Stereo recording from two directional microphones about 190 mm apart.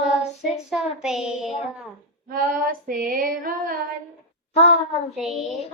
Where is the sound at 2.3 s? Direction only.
50° right (ahead or behind).